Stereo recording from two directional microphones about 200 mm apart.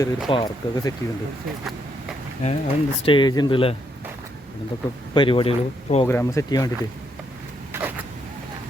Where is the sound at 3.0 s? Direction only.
25° left (ahead or behind).